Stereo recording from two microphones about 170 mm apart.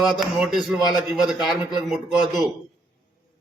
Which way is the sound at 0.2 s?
Centre (ahead or behind).